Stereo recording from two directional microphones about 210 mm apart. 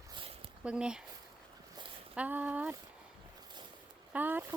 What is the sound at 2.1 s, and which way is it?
Speech, 5° right (ahead or behind).